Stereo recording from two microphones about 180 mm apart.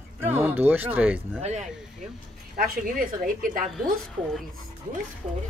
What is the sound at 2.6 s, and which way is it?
A woman's voice, 50° right (ahead or behind).